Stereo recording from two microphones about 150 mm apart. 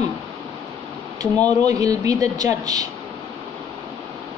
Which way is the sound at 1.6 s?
25° right (ahead or behind).